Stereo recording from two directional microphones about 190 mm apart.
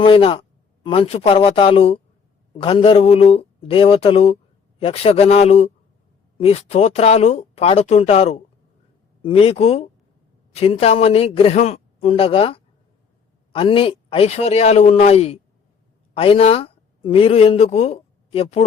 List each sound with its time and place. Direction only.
0.0 s speech: 30° left (ahead or behind)